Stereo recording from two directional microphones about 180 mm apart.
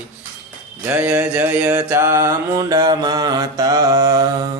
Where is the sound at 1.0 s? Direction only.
5° right (ahead or behind).